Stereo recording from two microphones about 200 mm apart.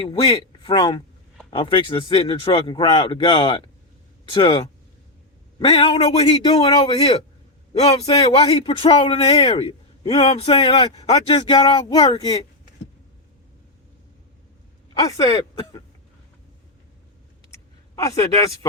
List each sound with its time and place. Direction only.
0.0 s a man's voice: 25° left (ahead or behind)
14.9 s speech: 20° left (ahead or behind)
17.5 s a sound: 15° left (ahead or behind)